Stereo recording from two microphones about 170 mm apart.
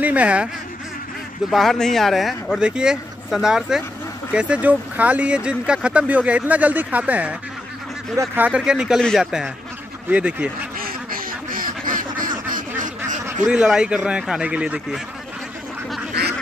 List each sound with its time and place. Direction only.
0.0 s speech: 10° right (ahead or behind)
1.5 s speech: centre (ahead or behind)
10.8 s quack: 60° right (ahead or behind)
13.5 s speech: 5° right (ahead or behind)